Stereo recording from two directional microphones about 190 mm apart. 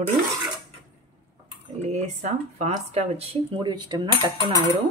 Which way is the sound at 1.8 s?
35° right (ahead or behind).